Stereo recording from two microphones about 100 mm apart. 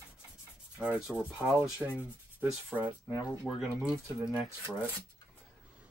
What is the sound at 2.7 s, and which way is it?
Rub, 15° right (ahead or behind).